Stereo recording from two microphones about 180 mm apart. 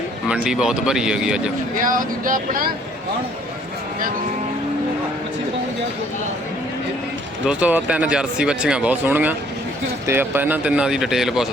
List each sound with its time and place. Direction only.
0.3 s speech: 5° right (ahead or behind)
1.8 s speech: 50° right (ahead or behind)
7.4 s speech: 5° right (ahead or behind)